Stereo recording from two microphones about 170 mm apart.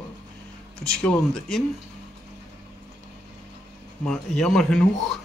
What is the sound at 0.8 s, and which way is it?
Speech, 5° left (ahead or behind).